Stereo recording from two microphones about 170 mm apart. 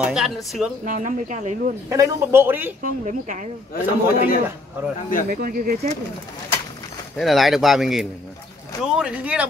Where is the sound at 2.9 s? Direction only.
50° right (ahead or behind).